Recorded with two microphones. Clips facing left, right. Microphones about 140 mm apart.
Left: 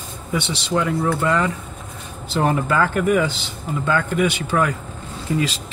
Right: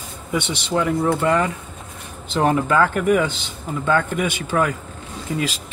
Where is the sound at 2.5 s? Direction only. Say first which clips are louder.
Right 2 dB; 35° right (ahead or behind).